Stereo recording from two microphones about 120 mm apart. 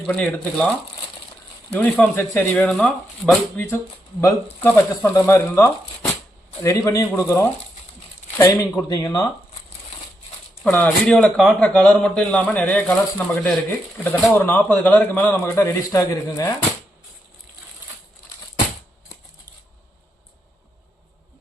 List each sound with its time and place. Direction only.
0.1 s a man's voice: 10° left (ahead or behind)
1.7 s a man's voice: 15° left (ahead or behind)
2.7 s a man's voice: 5° left (ahead or behind); by 9.2 s 30° left (ahead or behind)
10.7 s a man's voice: 15° left (ahead or behind)